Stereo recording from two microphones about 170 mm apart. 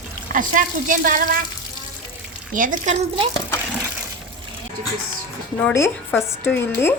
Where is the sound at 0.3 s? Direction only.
50° right (ahead or behind).